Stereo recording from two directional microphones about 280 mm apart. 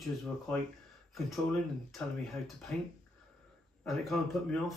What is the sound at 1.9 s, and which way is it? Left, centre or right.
Speech, centre.